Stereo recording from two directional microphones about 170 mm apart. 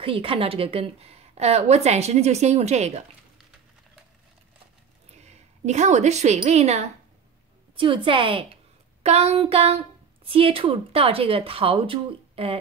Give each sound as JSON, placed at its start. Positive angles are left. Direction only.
{"t": 0.0, "sound": "a woman's voice", "side_deg": -30}
{"t": 5.1, "sound": "a woman's voice", "side_deg": -40}